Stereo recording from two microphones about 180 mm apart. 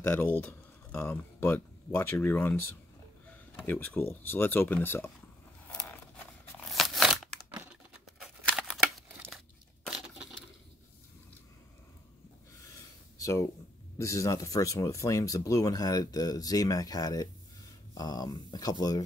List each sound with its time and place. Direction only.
0.1 s speech: 10° left (ahead or behind)
5.7 s zipper: 5° left (ahead or behind)
6.7 s a sound: centre (ahead or behind)
8.2 s scissors: centre (ahead or behind)
9.8 s crushing: 5° right (ahead or behind)
13.2 s speech: 15° left (ahead or behind)